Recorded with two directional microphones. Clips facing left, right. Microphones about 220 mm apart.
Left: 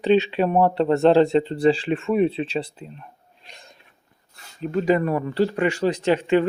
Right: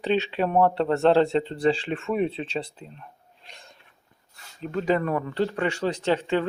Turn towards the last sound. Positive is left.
turn(degrees=15)  # may be behind; listen again after turning